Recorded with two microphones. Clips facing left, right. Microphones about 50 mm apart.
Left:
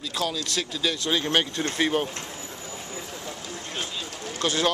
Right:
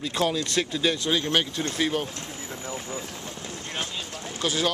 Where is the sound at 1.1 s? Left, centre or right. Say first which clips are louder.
Even; centre.